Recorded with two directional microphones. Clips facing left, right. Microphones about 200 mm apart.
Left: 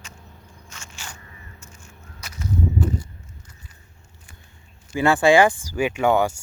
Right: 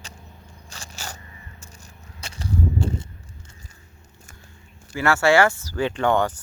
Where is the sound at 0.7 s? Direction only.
35° right (ahead or behind).